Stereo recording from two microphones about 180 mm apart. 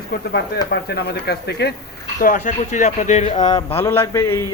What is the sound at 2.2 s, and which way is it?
Speech, 45° left (ahead or behind).